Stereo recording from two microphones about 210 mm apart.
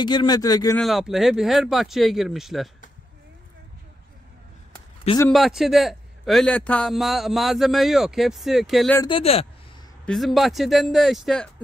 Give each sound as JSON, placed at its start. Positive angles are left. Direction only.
{"t": 0.0, "sound": "speech", "side_deg": 20}
{"t": 0.7, "sound": "a man's voice", "side_deg": 0}
{"t": 5.3, "sound": "a man's voice", "side_deg": 0}
{"t": 8.9, "sound": "speech", "side_deg": 20}
{"t": 10.0, "sound": "a man's voice", "side_deg": 0}